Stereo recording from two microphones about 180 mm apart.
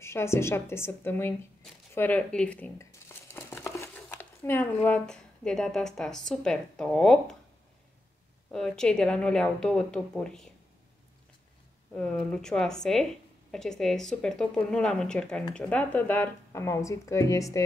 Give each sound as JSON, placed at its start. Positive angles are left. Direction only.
{"t": 0.0, "sound": "speech", "side_deg": 15}
{"t": 1.6, "sound": "a sound", "side_deg": 10}
{"t": 4.8, "sound": "a woman's voice", "side_deg": 5}
{"t": 8.5, "sound": "a woman's voice", "side_deg": 5}
{"t": 11.9, "sound": "a woman's voice", "side_deg": 5}